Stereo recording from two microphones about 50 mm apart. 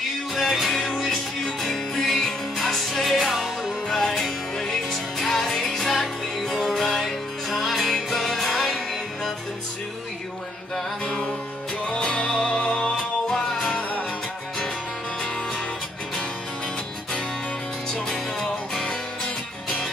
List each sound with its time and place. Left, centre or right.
0.4 s music: centre
11.9 s music: centre
18.0 s music: centre
18.9 s music: left